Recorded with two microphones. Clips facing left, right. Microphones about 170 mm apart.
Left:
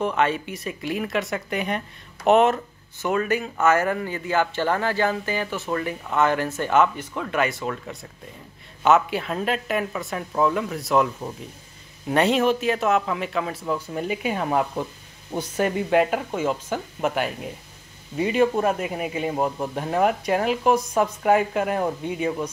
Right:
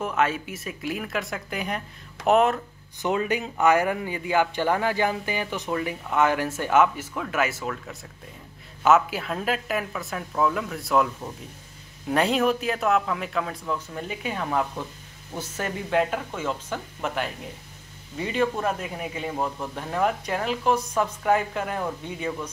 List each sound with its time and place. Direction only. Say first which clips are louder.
0.0 s speech: left 2 dB; 5° right (ahead or behind)
3.0 s speech: left 2 dB; 20° right (ahead or behind); by 11.1 s centre (ahead or behind)
12.1 s a man's voice: left 2 dB; centre (ahead or behind)